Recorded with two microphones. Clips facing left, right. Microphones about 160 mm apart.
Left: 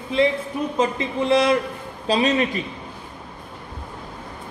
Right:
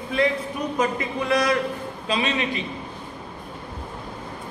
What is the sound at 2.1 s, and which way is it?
Speech, 40° left (ahead or behind).